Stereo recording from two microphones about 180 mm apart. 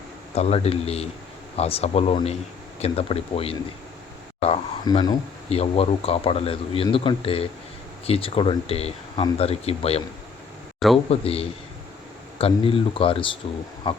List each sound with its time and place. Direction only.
0.3 s speech: 35° left (ahead or behind)
5.5 s speech: 35° left (ahead or behind)
10.8 s a man's voice: centre (ahead or behind)
11.1 s speech: 30° left (ahead or behind)